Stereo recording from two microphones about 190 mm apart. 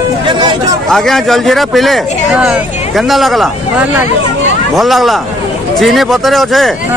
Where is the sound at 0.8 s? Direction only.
Centre (ahead or behind).